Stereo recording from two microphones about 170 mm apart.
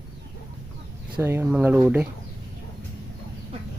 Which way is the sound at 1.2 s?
15° right (ahead or behind).